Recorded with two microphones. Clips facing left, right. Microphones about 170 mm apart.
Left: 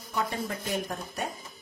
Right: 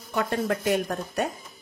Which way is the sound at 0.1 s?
65° right (ahead or behind).